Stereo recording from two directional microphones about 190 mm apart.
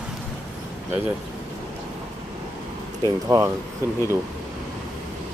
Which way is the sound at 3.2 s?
15° right (ahead or behind).